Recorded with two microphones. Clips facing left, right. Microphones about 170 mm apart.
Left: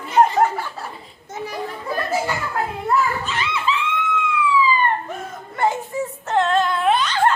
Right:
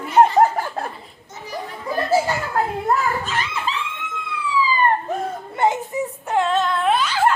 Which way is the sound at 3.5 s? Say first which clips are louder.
Left 4 dB; 40° right (ahead or behind).